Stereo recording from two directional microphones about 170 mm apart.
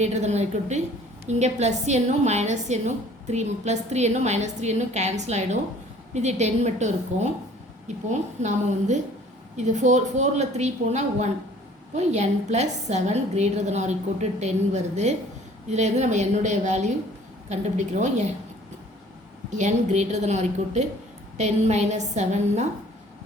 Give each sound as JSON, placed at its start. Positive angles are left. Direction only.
{"t": 0.0, "sound": "a woman's voice", "side_deg": -40}
{"t": 19.5, "sound": "a woman's voice", "side_deg": -45}